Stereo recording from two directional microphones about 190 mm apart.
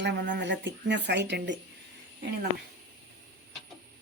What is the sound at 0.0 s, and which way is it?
Speech, 65° right (ahead or behind).